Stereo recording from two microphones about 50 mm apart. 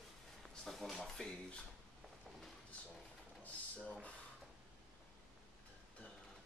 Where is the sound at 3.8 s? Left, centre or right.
Left.